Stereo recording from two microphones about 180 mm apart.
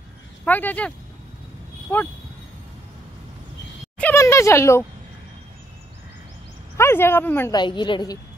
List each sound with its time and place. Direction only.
0.5 s speech: 10° left (ahead or behind)
4.0 s speech: 15° left (ahead or behind)
6.8 s speech: 15° left (ahead or behind)
7.5 s a woman's voice: 25° left (ahead or behind)